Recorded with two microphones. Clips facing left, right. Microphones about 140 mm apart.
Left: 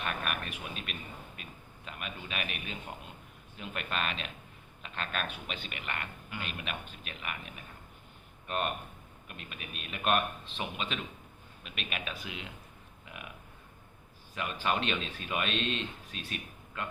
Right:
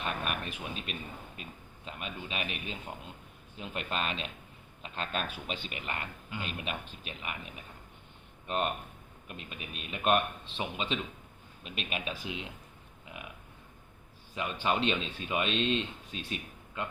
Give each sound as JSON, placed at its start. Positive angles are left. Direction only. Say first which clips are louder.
{"t": 0.0, "sound": "a sound", "louder": "right 1 dB", "side_deg": -30}
{"t": 1.4, "sound": "a man's voice", "louder": "right 2 dB", "side_deg": -30}
{"t": 8.4, "sound": "speech", "louder": "right 2 dB", "side_deg": -25}
{"t": 14.3, "sound": "speech", "louder": "right 1 dB", "side_deg": -25}